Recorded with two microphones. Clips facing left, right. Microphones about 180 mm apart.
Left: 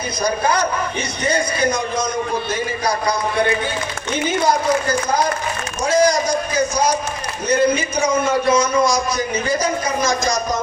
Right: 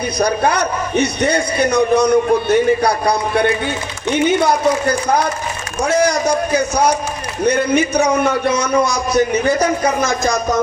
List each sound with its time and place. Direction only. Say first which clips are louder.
0.2 s a man's voice: right 2 dB; 65° right (ahead or behind)